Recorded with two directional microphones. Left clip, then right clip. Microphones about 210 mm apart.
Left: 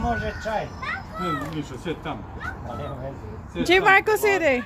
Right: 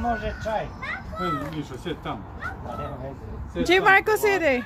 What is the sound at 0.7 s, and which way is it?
Speech, 10° right (ahead or behind).